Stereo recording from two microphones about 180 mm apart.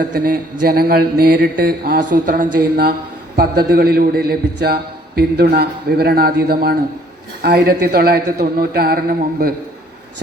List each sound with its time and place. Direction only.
0.0 s a man's voice: 50° right (ahead or behind)